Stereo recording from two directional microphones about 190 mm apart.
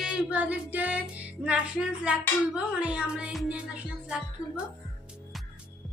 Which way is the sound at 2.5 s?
5° right (ahead or behind).